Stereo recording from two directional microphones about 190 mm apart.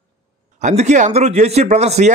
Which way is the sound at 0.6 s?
40° right (ahead or behind).